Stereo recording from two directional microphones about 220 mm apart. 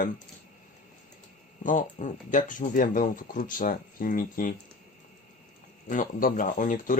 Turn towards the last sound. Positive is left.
turn(degrees=35)  # may be behind; listen again after turning